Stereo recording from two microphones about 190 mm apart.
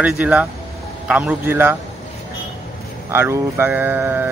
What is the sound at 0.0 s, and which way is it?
Speech, 5° right (ahead or behind).